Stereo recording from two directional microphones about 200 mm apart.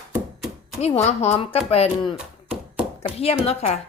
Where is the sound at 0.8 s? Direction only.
30° left (ahead or behind).